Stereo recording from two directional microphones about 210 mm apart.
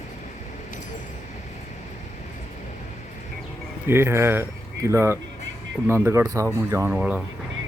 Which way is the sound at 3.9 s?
10° right (ahead or behind).